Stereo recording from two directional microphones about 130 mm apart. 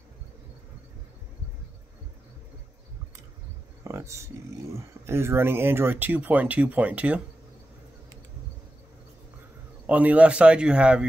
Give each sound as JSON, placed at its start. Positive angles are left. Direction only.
{"t": 3.8, "sound": "speech", "side_deg": -20}
{"t": 9.8, "sound": "speech", "side_deg": -10}